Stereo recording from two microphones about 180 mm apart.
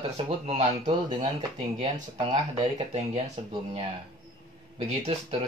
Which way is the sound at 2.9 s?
35° right (ahead or behind).